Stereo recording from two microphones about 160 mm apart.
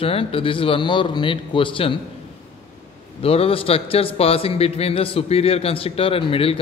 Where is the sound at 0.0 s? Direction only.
35° left (ahead or behind).